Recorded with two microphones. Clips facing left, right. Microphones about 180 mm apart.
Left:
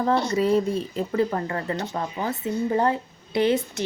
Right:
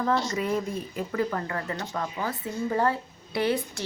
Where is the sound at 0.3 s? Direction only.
30° left (ahead or behind).